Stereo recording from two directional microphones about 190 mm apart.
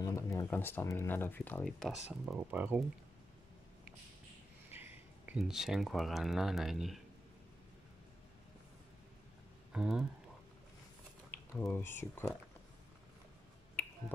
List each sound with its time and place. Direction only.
0.0 s speech: 15° left (ahead or behind); by 2.8 s 10° right (ahead or behind)
4.6 s a sound: 10° right (ahead or behind)
5.4 s speech: 5° right (ahead or behind)
9.7 s speech: 5° right (ahead or behind)
11.2 s speech: 10° left (ahead or behind)